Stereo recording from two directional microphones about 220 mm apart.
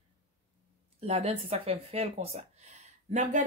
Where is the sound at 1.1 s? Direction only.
30° right (ahead or behind).